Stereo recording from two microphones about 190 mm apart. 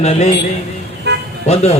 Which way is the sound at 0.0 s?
35° left (ahead or behind).